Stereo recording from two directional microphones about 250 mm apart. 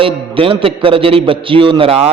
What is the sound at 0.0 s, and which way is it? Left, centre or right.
A man's voice, right.